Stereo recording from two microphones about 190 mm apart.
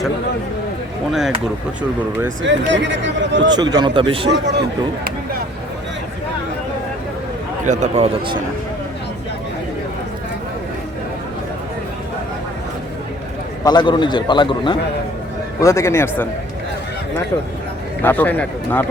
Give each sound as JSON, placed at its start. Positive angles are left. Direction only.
{"t": 2.4, "sound": "speech", "side_deg": -70}
{"t": 3.5, "sound": "a man's voice", "side_deg": -20}
{"t": 4.3, "sound": "speech", "side_deg": -65}
{"t": 7.6, "sound": "speech", "side_deg": -40}
{"t": 13.7, "sound": "a man's voice", "side_deg": 25}
{"t": 18.0, "sound": "speech", "side_deg": 10}